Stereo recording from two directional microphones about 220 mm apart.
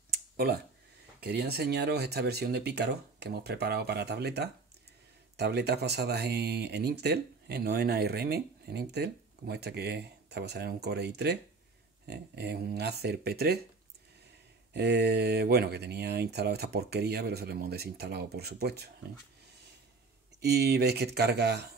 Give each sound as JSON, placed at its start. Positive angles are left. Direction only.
{"t": 0.1, "sound": "a sound", "side_deg": -45}
{"t": 1.2, "sound": "speech", "side_deg": -45}
{"t": 14.7, "sound": "speech", "side_deg": -50}
{"t": 20.3, "sound": "speech", "side_deg": -45}